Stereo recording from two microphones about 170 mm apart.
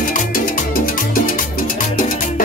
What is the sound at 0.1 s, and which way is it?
Salsa music, 55° left (ahead or behind).